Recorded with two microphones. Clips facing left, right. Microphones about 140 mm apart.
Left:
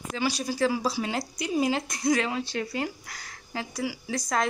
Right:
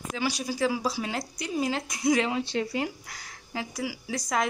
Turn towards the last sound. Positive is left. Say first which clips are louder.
# left 1 dB
turn(degrees=-10)  # may be behind; listen again after turning